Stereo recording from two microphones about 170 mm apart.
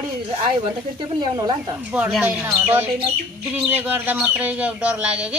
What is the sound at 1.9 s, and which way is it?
Speech, 5° right (ahead or behind).